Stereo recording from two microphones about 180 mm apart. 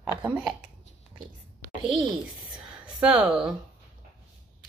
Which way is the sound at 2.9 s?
5° right (ahead or behind).